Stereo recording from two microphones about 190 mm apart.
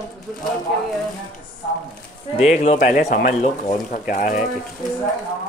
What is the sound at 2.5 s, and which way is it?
Speech, 35° left (ahead or behind).